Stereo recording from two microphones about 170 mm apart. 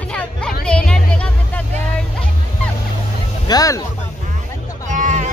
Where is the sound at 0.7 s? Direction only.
5° left (ahead or behind).